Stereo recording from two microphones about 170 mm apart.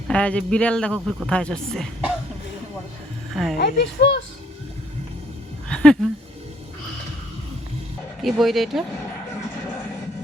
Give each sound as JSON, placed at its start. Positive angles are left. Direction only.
{"t": 0.1, "sound": "a man's voice", "side_deg": 5}
{"t": 3.3, "sound": "a man's voice", "side_deg": 0}
{"t": 3.6, "sound": "speech", "side_deg": 90}
{"t": 5.6, "sound": "a sound", "side_deg": 5}
{"t": 8.2, "sound": "a man's voice", "side_deg": 0}